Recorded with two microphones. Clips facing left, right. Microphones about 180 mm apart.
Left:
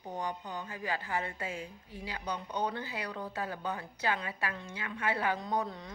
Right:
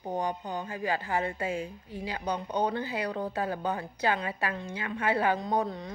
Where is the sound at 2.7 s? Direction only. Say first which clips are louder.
Right 7 dB; 40° right (ahead or behind).